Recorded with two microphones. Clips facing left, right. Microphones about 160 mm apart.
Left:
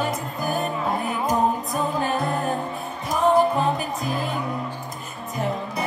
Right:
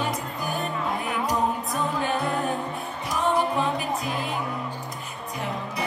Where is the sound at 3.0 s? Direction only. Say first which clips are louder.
Left 6 dB; 40° left (ahead or behind).